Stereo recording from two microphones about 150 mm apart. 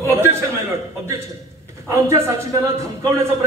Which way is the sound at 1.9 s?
20° right (ahead or behind).